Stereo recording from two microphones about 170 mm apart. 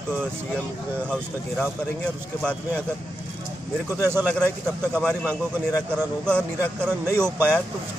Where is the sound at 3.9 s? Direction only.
10° right (ahead or behind).